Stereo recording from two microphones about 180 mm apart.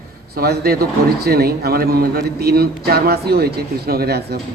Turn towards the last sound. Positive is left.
turn(degrees=-65)  # may be behind; listen again after turning